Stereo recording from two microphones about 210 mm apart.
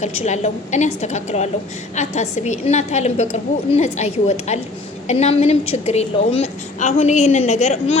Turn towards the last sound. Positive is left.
turn(degrees=30)  # may be behind; listen again after turning